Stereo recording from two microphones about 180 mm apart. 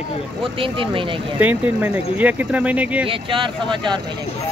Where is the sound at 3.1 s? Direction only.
30° right (ahead or behind).